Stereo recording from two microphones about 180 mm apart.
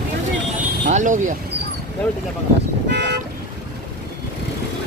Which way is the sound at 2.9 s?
70° right (ahead or behind).